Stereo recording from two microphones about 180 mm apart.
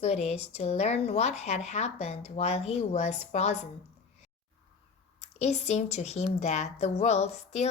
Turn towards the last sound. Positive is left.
turn(degrees=35)  # may be behind; listen again after turning